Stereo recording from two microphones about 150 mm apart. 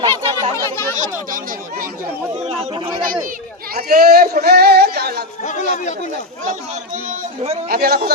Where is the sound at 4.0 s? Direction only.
90° right.